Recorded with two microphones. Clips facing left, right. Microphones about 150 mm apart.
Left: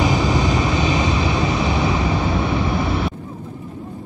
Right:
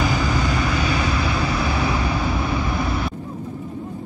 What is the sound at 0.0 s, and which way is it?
Vehicle, 20° left (ahead or behind).